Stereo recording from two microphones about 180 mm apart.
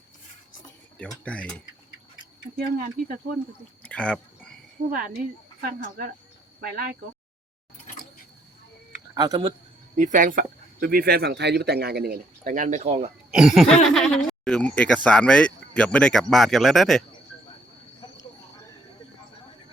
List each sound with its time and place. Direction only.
0.9 s speech: 5° left (ahead or behind)
2.7 s speech: 55° right (ahead or behind)
3.8 s a sound: 5° left (ahead or behind)
5.6 s speech: 55° right (ahead or behind)
8.9 s a sound: 20° right (ahead or behind)
9.9 s speech: 45° right (ahead or behind)
13.3 s speech: centre (ahead or behind)